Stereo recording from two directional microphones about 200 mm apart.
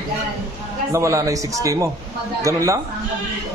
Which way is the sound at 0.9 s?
15° right (ahead or behind).